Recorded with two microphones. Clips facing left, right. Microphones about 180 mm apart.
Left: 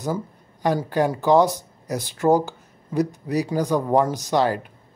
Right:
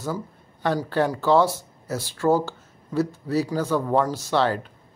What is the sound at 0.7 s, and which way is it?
Speech, 15° left (ahead or behind).